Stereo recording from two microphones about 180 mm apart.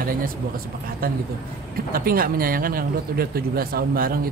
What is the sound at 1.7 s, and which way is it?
A man's voice, 55° right (ahead or behind).